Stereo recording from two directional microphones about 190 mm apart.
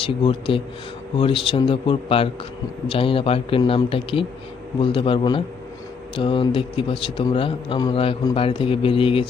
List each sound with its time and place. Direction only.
0.0 s a man's voice: 25° left (ahead or behind)